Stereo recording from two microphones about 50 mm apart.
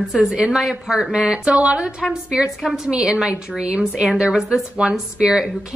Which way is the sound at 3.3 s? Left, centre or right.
Right.